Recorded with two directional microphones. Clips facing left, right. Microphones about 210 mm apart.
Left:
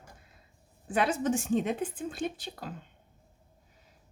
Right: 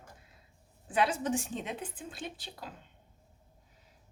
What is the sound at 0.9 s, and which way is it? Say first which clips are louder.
A woman's voice: left 2 dB; 50° left (ahead or behind).